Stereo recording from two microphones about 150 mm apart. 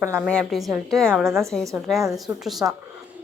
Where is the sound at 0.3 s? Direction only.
5° left (ahead or behind).